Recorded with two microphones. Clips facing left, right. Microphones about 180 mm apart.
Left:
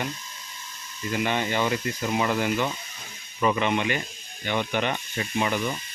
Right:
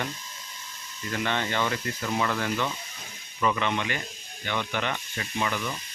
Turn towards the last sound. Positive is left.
turn(degrees=20)  # may be behind; listen again after turning